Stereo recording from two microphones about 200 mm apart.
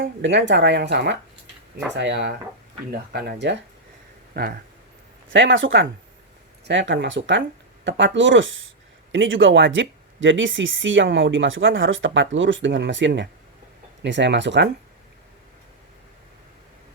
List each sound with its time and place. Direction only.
0.0 s speech: 65° right (ahead or behind)
4.4 s speech: 45° right (ahead or behind)
5.3 s speech: 70° right (ahead or behind)